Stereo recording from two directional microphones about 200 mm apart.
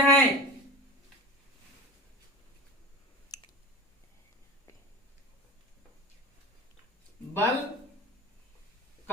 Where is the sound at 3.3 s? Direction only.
20° left (ahead or behind).